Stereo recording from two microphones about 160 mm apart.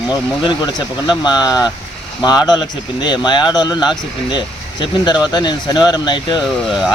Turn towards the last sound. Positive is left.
turn(degrees=-5)  # may be behind; listen again after turning